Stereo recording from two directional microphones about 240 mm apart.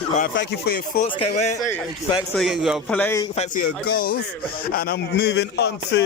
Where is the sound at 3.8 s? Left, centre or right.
Left.